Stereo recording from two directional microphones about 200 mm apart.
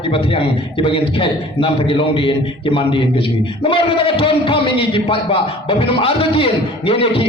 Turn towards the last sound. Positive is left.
turn(degrees=30)  # may be behind; listen again after turning